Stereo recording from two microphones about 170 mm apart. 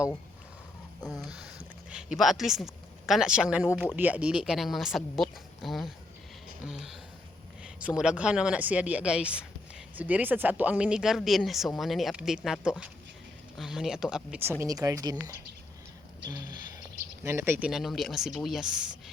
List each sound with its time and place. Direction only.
1.0 s speech: centre (ahead or behind)
14.6 s speech: 20° right (ahead or behind)
17.2 s speech: 15° right (ahead or behind)
17.7 s speech: centre (ahead or behind)